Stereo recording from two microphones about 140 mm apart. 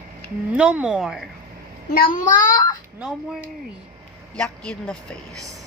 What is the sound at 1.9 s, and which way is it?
Speech, 85° left.